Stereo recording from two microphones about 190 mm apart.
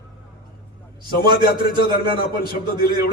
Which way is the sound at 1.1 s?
50° left (ahead or behind).